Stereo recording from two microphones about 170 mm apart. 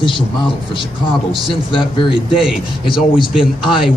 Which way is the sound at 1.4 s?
30° left (ahead or behind).